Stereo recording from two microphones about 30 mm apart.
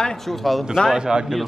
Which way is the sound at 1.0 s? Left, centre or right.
Right.